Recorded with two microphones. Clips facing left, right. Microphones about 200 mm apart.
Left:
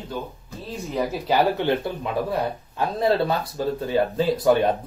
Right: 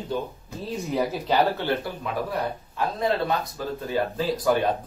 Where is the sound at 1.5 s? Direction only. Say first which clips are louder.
Left 4 dB; 20° left (ahead or behind).